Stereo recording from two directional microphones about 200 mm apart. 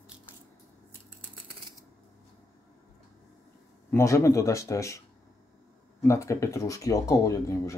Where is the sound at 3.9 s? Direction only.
15° left (ahead or behind).